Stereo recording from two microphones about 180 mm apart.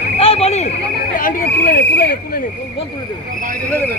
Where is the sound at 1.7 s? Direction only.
65° left (ahead or behind).